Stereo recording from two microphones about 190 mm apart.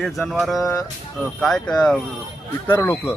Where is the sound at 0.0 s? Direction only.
Centre (ahead or behind).